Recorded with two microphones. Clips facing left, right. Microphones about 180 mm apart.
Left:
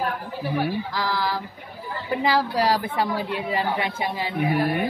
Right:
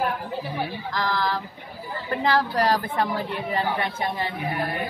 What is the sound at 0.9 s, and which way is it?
A woman's voice, 10° left (ahead or behind).